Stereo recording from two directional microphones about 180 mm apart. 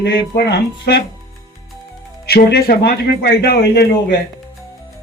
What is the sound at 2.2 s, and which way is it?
Speech, 60° left (ahead or behind).